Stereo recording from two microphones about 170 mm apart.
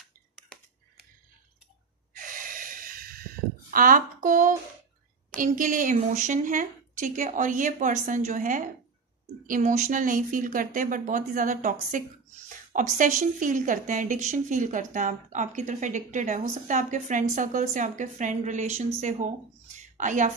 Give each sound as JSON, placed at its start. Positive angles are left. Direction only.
{"t": 2.1, "sound": "gasp", "side_deg": -55}
{"t": 5.4, "sound": "a woman's voice", "side_deg": -50}